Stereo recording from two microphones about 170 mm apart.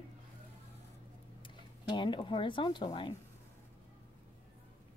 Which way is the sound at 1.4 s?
30° left (ahead or behind).